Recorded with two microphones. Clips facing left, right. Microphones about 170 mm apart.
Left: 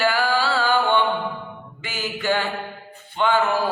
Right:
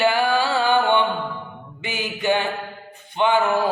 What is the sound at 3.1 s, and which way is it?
Music, 20° right (ahead or behind).